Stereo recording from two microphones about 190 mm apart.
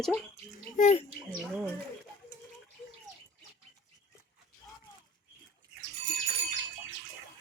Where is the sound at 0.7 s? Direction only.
40° left (ahead or behind).